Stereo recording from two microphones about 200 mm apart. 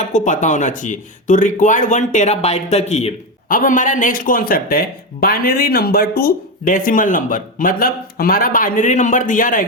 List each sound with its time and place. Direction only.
0.0 s speech: 35° left (ahead or behind)